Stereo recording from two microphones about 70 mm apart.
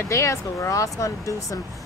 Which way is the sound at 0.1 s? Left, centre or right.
Left.